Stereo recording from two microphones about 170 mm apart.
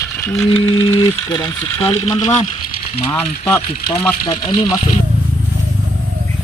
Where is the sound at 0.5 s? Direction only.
35° left (ahead or behind).